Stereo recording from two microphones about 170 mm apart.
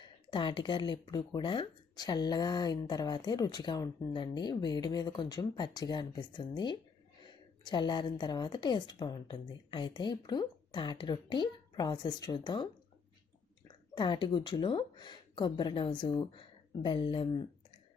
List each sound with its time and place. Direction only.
0.0 s speech: 30° left (ahead or behind)
13.9 s speech: 25° left (ahead or behind)